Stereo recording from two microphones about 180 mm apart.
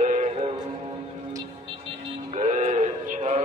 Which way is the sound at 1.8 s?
40° right (ahead or behind).